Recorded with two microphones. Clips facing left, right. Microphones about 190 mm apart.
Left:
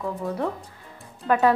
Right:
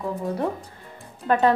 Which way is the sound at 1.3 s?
5° left (ahead or behind).